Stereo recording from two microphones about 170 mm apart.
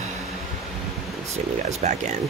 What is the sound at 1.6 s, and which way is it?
Speech, 40° right (ahead or behind).